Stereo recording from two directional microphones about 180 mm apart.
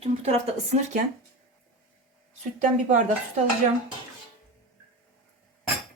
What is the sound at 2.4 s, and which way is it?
Speech, 40° right (ahead or behind).